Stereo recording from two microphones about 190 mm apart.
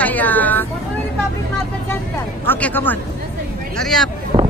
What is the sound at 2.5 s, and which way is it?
A man's voice, 10° left (ahead or behind).